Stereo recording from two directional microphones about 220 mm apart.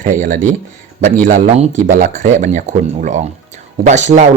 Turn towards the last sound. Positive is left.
turn(degrees=-30)  # may be behind; listen again after turning